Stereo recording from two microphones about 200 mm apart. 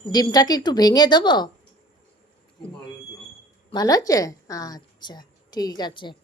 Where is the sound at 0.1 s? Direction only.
20° left (ahead or behind).